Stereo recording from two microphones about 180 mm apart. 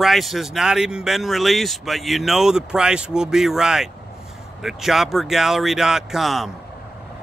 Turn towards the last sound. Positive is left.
turn(degrees=0)  # may be behind; listen again after turning